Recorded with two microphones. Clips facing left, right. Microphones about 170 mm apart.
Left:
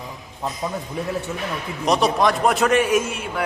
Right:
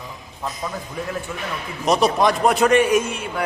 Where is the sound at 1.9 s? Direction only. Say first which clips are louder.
Right 1 dB; centre (ahead or behind).